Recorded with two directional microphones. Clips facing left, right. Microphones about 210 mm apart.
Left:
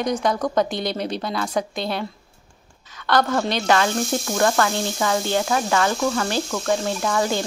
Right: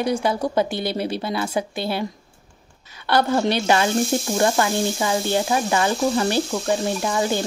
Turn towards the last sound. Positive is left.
turn(degrees=-20)  # may be behind; listen again after turning